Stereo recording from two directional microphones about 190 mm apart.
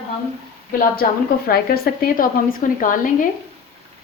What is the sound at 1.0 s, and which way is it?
A woman's voice, 50° left (ahead or behind).